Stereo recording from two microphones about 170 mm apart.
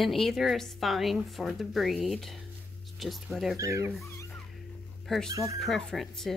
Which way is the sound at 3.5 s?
20° right (ahead or behind).